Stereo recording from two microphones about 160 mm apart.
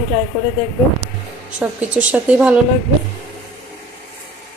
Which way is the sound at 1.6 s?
10° right (ahead or behind).